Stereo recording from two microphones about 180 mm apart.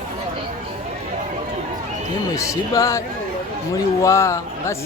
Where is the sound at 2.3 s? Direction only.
15° left (ahead or behind).